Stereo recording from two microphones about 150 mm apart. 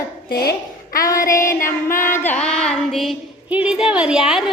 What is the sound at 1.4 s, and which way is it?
Child singing, 65° left (ahead or behind).